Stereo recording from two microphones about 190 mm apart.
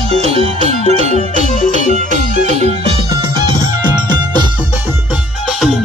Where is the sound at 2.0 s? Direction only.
40° right (ahead or behind).